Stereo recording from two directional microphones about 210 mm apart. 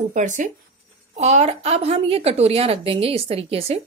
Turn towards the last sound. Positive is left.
turn(degrees=-30)  # may be behind; listen again after turning